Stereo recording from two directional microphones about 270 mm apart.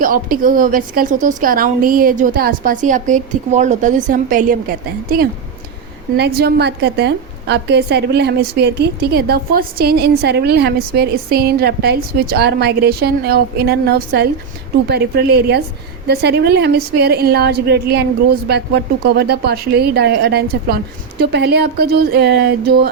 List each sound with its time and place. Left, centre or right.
0.0 s a woman's voice: right